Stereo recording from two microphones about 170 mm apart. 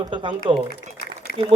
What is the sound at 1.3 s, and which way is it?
Speech, 60° left (ahead or behind).